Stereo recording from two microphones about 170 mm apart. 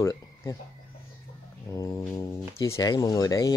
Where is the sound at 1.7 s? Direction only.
20° left (ahead or behind).